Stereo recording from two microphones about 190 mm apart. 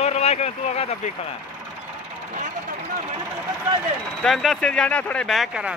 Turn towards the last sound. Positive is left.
turn(degrees=0)  # may be behind; listen again after turning